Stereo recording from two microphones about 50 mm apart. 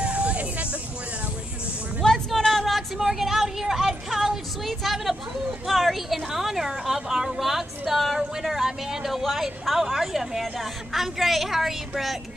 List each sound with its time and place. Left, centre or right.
0.0 s vehicle: right
2.0 s a sound: centre
5.7 s a woman's voice: centre